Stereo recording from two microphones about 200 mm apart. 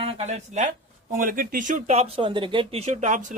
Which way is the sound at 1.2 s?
45° right (ahead or behind).